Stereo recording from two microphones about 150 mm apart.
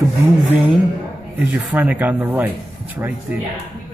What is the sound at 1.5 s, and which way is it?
Speech, 10° right (ahead or behind).